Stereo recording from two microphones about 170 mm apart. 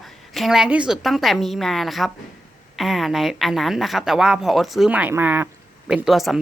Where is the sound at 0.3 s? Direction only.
Centre (ahead or behind).